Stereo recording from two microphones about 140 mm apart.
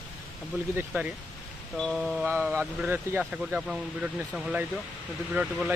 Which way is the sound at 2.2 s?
15° right (ahead or behind).